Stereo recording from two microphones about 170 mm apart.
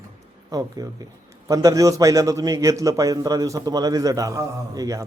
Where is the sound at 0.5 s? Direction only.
20° right (ahead or behind).